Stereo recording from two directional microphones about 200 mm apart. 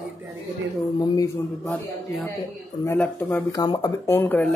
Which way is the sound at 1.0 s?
20° left (ahead or behind).